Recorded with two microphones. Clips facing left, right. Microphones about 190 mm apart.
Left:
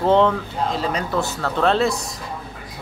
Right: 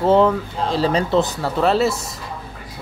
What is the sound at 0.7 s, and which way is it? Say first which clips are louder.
Speech: right 8 dB; 30° right (ahead or behind).